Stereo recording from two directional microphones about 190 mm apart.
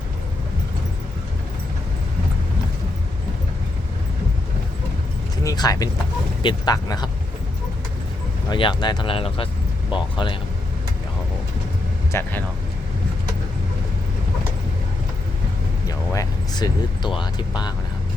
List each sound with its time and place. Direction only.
5.4 s speech: 20° left (ahead or behind)
8.4 s speech: 25° left (ahead or behind)
12.1 s speech: 15° left (ahead or behind)
16.1 s speech: 20° left (ahead or behind)